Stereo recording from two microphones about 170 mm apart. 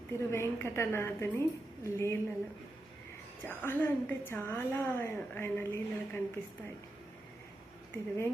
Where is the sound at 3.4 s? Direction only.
10° left (ahead or behind).